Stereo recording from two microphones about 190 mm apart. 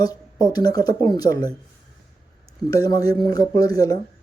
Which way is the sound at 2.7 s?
20° left (ahead or behind).